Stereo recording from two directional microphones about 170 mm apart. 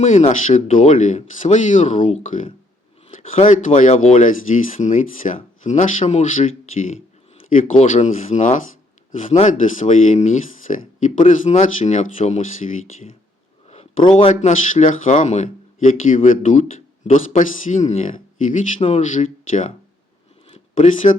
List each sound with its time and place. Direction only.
0.0 s speech: 45° left (ahead or behind)
13.7 s a sound: 40° left (ahead or behind)
14.2 s speech: 30° left (ahead or behind)
14.7 s speech: 50° left (ahead or behind)
20.7 s speech: 45° left (ahead or behind)